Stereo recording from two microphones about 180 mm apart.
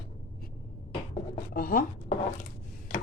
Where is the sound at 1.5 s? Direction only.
55° left (ahead or behind).